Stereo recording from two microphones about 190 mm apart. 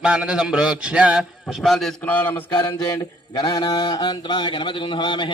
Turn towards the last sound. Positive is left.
turn(degrees=25)  # may be behind; listen again after turning